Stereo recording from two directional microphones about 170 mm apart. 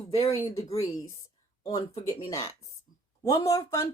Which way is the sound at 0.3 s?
20° left (ahead or behind).